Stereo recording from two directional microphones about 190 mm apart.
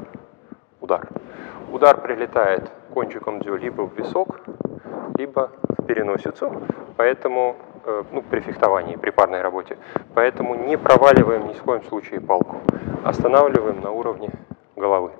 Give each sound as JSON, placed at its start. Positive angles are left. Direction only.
{"t": 0.8, "sound": "speech", "side_deg": 15}
{"t": 4.2, "sound": "a sound", "side_deg": 20}
{"t": 5.2, "sound": "speech", "side_deg": 20}
{"t": 5.9, "sound": "speech", "side_deg": 15}